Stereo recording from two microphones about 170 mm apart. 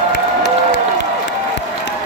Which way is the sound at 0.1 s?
90° left.